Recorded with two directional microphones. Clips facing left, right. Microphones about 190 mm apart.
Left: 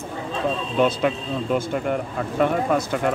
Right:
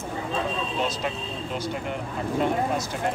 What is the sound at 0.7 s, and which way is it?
Speech, 60° left (ahead or behind).